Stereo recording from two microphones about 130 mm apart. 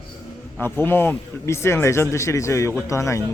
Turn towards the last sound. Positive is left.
turn(degrees=25)  # may be behind; listen again after turning